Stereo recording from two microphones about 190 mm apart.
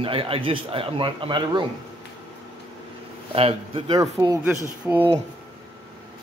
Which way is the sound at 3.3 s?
30° right (ahead or behind).